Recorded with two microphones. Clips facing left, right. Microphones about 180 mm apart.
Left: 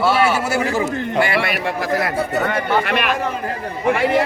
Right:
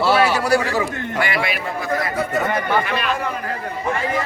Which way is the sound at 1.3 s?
75° left (ahead or behind).